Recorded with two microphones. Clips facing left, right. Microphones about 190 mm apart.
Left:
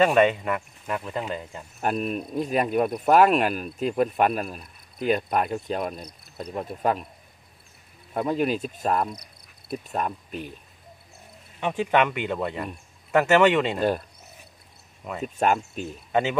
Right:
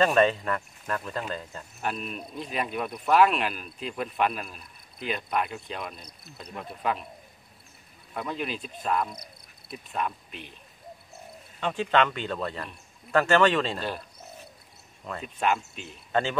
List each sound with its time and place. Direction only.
0.0 s a man's voice: 15° left (ahead or behind)
1.8 s speech: 45° left (ahead or behind)
8.1 s speech: 40° left (ahead or behind)
11.6 s a man's voice: 15° left (ahead or behind)
13.7 s speech: 50° left (ahead or behind)
15.2 s speech: 45° left (ahead or behind)
16.1 s speech: 15° left (ahead or behind)